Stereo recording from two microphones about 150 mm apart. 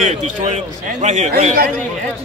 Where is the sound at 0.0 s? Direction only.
55° right (ahead or behind).